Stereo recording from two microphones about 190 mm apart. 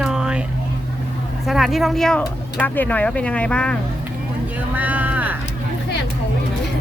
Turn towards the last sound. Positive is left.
turn(degrees=-10)  # may be behind; listen again after turning